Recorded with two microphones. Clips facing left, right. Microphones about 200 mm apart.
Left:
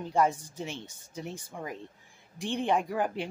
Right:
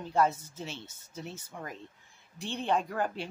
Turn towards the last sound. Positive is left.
turn(degrees=15)  # may be behind; listen again after turning